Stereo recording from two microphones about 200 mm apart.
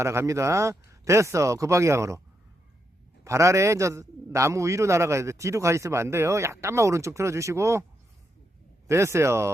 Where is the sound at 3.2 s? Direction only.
15° right (ahead or behind).